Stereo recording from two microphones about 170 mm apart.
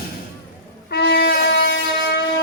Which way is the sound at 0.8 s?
70° left (ahead or behind).